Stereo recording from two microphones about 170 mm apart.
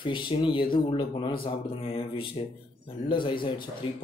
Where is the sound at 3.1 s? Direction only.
30° left (ahead or behind).